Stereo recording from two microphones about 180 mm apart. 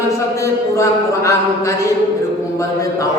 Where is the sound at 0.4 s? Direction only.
15° left (ahead or behind).